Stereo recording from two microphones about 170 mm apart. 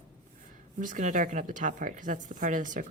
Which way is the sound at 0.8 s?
50° right (ahead or behind).